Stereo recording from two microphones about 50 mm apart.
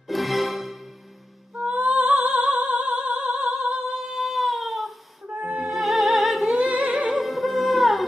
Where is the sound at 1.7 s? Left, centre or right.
Right.